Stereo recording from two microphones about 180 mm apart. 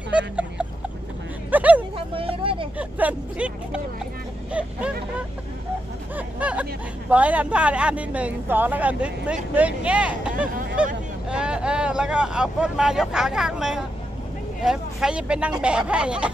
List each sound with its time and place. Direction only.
1.5 s speech: 10° right (ahead or behind)
2.0 s speech: 30° right (ahead or behind)
2.8 s speech: 10° right (ahead or behind)
6.1 s speech: 10° right (ahead or behind)